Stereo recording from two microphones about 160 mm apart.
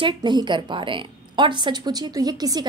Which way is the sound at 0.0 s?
25° right (ahead or behind).